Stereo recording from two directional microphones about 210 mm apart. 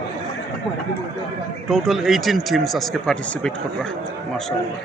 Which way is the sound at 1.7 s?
Centre (ahead or behind).